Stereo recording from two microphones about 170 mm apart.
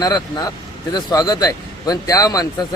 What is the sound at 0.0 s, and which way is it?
Speech, 20° left (ahead or behind).